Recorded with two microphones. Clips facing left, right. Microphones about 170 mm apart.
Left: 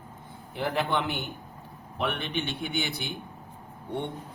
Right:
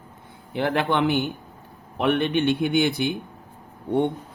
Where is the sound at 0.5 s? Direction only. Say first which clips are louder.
Right 6 dB; 75° right (ahead or behind).